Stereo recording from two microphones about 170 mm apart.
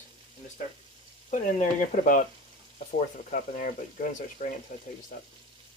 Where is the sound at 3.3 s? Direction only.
50° left (ahead or behind).